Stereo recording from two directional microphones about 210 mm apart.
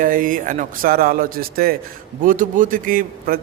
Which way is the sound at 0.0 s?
40° right (ahead or behind).